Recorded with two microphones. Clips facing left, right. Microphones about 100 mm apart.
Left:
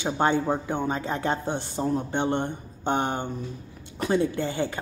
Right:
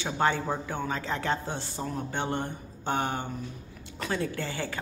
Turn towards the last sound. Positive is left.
turn(degrees=20)  # may be behind; listen again after turning